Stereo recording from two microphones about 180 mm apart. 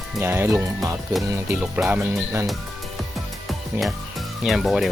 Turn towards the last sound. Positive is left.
turn(degrees=0)  # may be behind; listen again after turning